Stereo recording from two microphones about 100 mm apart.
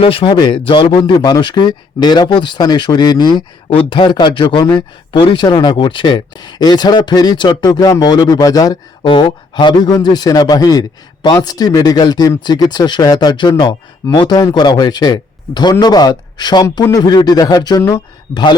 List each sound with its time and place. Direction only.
0.0 s speech: 65° left (ahead or behind); by 8.8 s 40° left (ahead or behind)
9.0 s speech: 50° left (ahead or behind)